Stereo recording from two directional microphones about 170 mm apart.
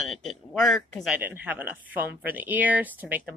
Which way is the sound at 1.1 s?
10° right (ahead or behind).